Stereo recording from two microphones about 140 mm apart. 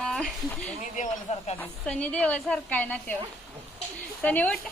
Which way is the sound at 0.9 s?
50° left (ahead or behind).